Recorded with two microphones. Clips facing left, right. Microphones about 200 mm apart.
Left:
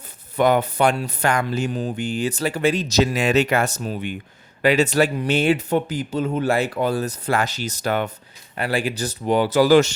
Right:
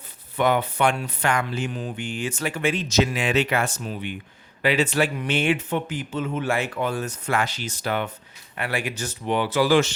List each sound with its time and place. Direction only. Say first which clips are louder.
0.3 s speech: left 4 dB; 40° left (ahead or behind)